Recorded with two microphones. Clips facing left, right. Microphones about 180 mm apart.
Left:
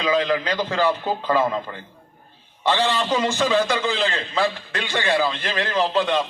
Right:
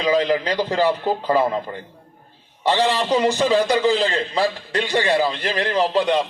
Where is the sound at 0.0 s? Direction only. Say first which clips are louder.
Right 2 dB; 35° right (ahead or behind).